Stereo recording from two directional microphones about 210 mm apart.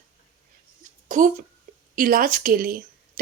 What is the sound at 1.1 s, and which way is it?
Speech, 35° right (ahead or behind).